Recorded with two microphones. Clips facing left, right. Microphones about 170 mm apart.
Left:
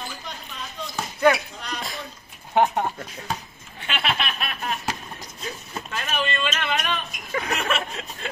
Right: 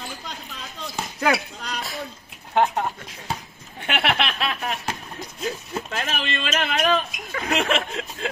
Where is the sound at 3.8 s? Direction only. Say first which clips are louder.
Right 4 dB; 60° right (ahead or behind); by 4.8 s 80° right.